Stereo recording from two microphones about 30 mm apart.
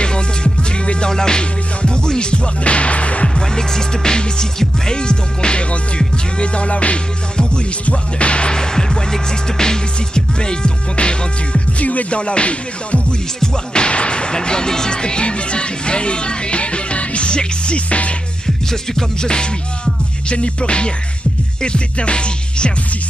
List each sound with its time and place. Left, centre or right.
0.0 s music: left
1.1 s music: left
2.1 s music: left
3.3 s music: left
8.5 s music: left
11.8 s music: left
12.1 s music: left
13.7 s speech: left
17.3 s music: left
17.7 s music: left
19.2 s music: left